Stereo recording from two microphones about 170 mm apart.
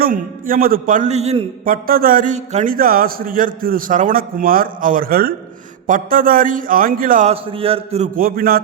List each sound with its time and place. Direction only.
0.0 s a man's voice: 55° right (ahead or behind); by 1.5 s 40° right (ahead or behind)
1.6 s a man's voice: 55° right (ahead or behind)
7.3 s a man's voice: 35° right (ahead or behind)
8.1 s a man's voice: 60° right (ahead or behind)